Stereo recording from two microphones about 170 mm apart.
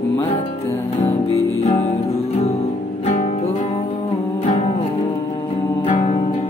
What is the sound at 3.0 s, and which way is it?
Music, 40° left (ahead or behind).